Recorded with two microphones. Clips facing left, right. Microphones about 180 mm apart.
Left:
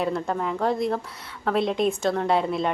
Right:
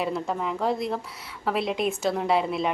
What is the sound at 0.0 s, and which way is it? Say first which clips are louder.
A woman's voice: left 2 dB; centre (ahead or behind).